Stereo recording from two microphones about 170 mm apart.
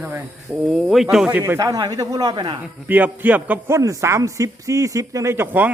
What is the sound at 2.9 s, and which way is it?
A man's voice, 10° right (ahead or behind).